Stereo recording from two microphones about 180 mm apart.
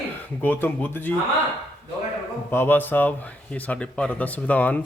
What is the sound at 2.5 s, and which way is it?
Speech, 10° left (ahead or behind).